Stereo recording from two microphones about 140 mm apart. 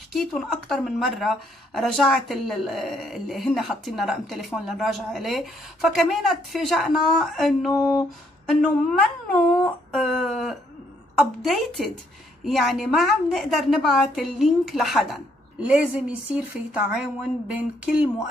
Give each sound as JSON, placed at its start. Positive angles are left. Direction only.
{"t": 0.1, "sound": "a woman's voice", "side_deg": 0}
{"t": 7.7, "sound": "a sound", "side_deg": 15}
{"t": 8.5, "sound": "a woman's voice", "side_deg": 0}